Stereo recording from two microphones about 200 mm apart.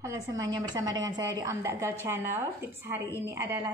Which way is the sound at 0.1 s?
15° right (ahead or behind).